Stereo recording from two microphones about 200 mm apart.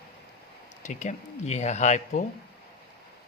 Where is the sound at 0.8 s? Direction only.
35° left (ahead or behind).